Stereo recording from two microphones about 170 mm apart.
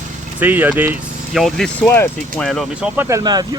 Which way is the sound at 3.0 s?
20° right (ahead or behind).